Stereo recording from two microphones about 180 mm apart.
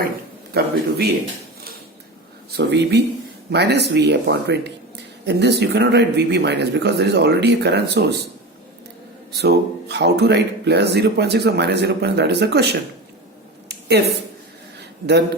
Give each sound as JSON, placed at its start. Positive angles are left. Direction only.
{"t": 0.5, "sound": "a man's voice", "side_deg": -60}
{"t": 2.6, "sound": "speech", "side_deg": -70}
{"t": 9.3, "sound": "speech", "side_deg": -65}
{"t": 13.7, "sound": "a sound", "side_deg": -70}